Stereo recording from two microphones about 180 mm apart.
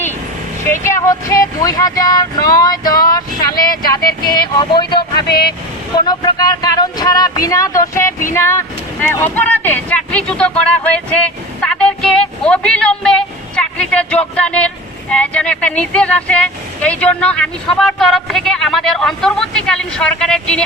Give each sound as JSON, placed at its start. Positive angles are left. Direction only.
{"t": 0.6, "sound": "speech", "side_deg": 15}
{"t": 5.3, "sound": "speech", "side_deg": 60}
{"t": 6.1, "sound": "speech", "side_deg": 20}